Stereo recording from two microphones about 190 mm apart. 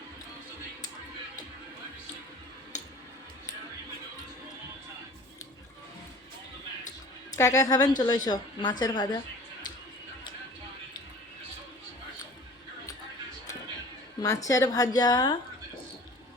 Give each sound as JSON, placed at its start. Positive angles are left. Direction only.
{"t": 7.3, "sound": "a woman's voice", "side_deg": 15}
{"t": 14.2, "sound": "a woman's voice", "side_deg": 20}